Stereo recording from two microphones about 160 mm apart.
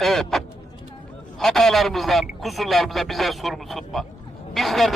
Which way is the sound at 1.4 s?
Centre (ahead or behind).